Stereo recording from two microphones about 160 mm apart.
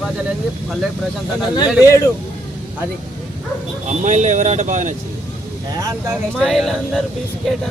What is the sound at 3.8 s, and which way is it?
Speech, 50° right (ahead or behind).